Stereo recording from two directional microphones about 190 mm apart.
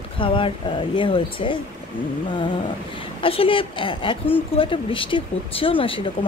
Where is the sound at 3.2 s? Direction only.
30° left (ahead or behind).